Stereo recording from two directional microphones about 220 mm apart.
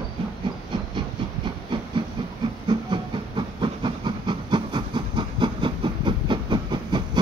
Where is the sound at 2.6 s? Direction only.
20° right (ahead or behind).